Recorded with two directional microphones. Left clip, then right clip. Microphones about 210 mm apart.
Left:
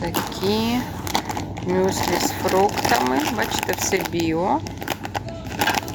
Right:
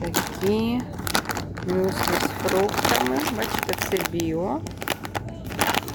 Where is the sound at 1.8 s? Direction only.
15° right (ahead or behind).